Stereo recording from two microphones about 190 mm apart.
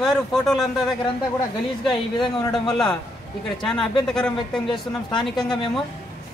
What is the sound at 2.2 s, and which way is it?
Speech, 25° left (ahead or behind).